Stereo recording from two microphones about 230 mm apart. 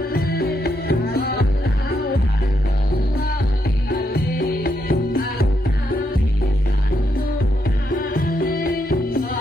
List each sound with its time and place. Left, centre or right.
0.1 s music: left
3.9 s music: left
7.9 s music: left